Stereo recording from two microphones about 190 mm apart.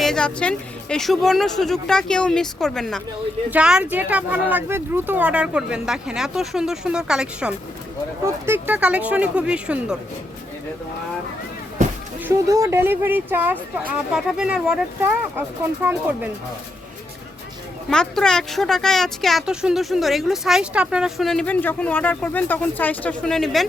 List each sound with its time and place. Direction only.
0.0 s speech: 5° left (ahead or behind)
12.2 s speech: 15° right (ahead or behind)
17.8 s speech: 5° left (ahead or behind)